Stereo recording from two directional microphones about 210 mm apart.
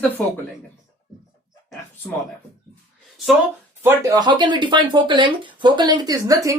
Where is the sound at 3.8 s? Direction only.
15° right (ahead or behind).